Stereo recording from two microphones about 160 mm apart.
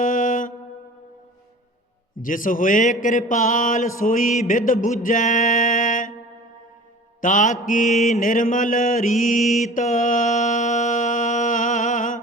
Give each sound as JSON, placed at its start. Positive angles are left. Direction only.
{"t": 0.0, "sound": "mantra", "side_deg": 55}
{"t": 2.1, "sound": "mantra", "side_deg": 55}
{"t": 5.0, "sound": "music", "side_deg": 55}
{"t": 7.2, "sound": "mantra", "side_deg": 55}